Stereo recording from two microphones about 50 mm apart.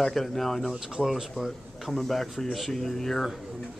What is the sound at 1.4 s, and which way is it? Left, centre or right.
Speech, centre.